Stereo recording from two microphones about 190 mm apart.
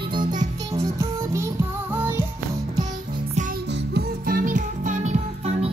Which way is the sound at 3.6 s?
60° right (ahead or behind).